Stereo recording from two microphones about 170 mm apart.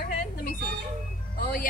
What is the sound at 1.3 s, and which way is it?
Speech, 55° left (ahead or behind).